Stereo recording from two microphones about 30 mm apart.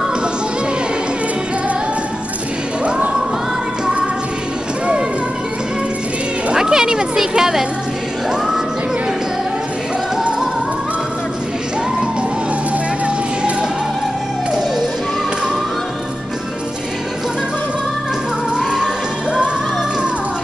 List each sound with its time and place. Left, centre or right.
6.5 s cat: right
7.2 s a sound: centre
13.0 s music: right